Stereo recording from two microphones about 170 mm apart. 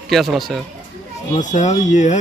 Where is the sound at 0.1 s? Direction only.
Centre (ahead or behind).